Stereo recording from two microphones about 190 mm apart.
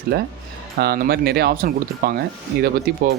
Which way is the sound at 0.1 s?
55° right (ahead or behind).